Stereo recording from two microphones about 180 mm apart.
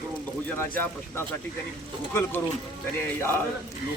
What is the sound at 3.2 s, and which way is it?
Speech, 15° left (ahead or behind).